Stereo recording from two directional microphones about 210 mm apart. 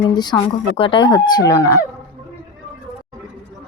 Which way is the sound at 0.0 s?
20° left (ahead or behind).